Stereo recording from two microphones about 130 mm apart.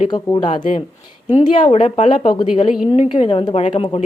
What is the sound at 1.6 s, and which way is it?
A woman's voice, 50° left (ahead or behind).